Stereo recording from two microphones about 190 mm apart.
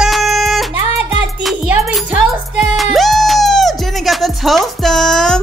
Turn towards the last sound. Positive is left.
turn(degrees=5)  # may be behind; listen again after turning